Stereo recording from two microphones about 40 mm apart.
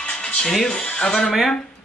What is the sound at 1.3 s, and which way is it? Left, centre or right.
Speech, centre.